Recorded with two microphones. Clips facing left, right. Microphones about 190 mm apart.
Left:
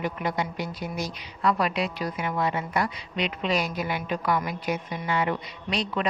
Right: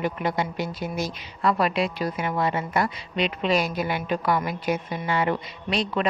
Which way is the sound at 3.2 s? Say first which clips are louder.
Right 3 dB; 30° right (ahead or behind).